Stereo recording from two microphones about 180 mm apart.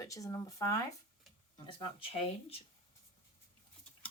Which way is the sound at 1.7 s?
30° left (ahead or behind).